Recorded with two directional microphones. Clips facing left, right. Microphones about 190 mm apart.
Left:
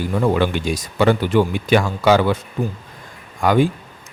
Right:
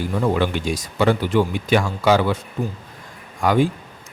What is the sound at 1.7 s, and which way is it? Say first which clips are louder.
Speech: left 2 dB; 70° left (ahead or behind).